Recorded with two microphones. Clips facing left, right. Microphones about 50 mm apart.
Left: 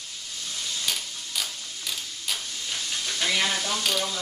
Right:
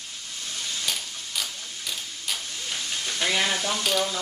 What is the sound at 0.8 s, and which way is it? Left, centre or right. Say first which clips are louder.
Mechanisms: even; centre.